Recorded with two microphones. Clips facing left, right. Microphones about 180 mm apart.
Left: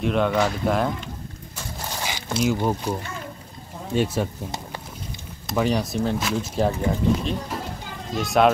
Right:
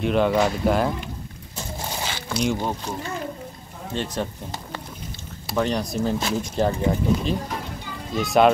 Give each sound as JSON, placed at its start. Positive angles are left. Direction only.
{"t": 0.0, "sound": "speech", "side_deg": 0}
{"t": 2.0, "sound": "a sound", "side_deg": 15}
{"t": 2.3, "sound": "speech", "side_deg": 5}
{"t": 3.9, "sound": "speech", "side_deg": 5}
{"t": 5.6, "sound": "speech", "side_deg": 5}